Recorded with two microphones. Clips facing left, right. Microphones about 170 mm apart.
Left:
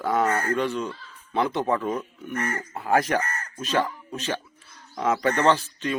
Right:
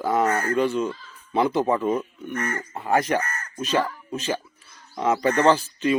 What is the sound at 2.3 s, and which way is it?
Speech, 30° left (ahead or behind).